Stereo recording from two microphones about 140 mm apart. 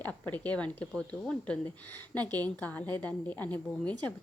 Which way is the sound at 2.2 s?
30° right (ahead or behind).